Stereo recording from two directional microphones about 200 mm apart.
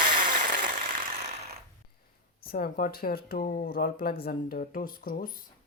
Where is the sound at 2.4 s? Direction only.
50° left (ahead or behind).